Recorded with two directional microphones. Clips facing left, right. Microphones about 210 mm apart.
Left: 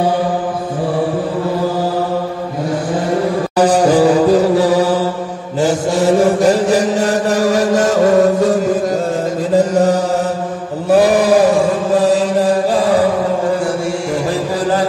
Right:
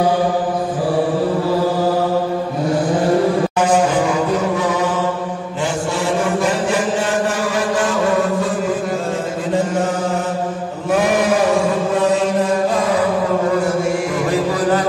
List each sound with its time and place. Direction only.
3.5 s music: 35° left (ahead or behind)
5.6 s mantra: 40° left (ahead or behind)
9.6 s chant: 40° left (ahead or behind)